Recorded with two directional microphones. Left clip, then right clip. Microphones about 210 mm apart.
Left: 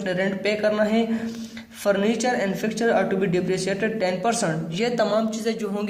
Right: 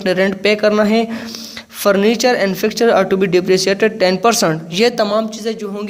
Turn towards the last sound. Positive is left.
turn(degrees=-30)  # may be behind; listen again after turning